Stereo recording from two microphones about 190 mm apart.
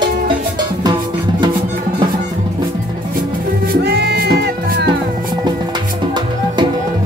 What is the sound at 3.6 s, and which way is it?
Music, 55° right (ahead or behind).